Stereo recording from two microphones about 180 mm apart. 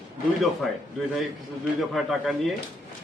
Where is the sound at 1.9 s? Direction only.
Centre (ahead or behind).